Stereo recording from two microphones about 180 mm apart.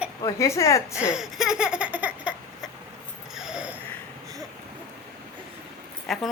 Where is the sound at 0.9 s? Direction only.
5° right (ahead or behind).